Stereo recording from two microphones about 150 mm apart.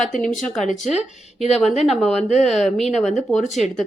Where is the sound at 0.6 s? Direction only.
55° left (ahead or behind).